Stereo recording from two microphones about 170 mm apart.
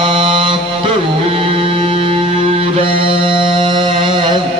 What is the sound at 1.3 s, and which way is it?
Music, 35° right (ahead or behind).